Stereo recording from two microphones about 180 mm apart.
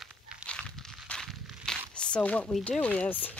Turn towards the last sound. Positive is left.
turn(degrees=10)  # may be behind; listen again after turning